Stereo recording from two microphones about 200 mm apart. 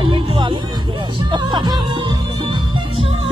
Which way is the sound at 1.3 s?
20° right (ahead or behind).